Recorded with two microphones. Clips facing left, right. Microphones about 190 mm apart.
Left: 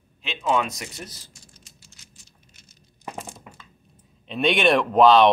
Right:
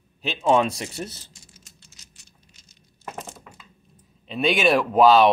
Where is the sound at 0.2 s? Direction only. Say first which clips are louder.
Right 4 dB; 35° right (ahead or behind).